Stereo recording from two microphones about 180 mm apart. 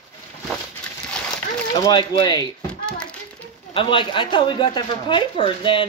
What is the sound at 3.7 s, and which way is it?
Speech, 30° left (ahead or behind).